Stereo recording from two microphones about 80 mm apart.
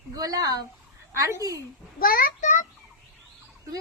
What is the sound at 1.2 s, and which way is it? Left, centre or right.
Speech, right.